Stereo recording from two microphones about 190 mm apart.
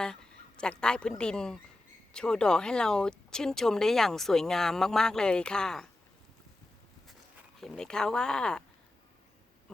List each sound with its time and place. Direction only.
0.0 s a sound: 5° left (ahead or behind)
1.2 s speech: 5° left (ahead or behind)
7.6 s speech: centre (ahead or behind)